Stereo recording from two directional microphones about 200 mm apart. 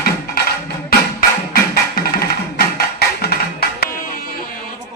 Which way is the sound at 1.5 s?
50° left (ahead or behind).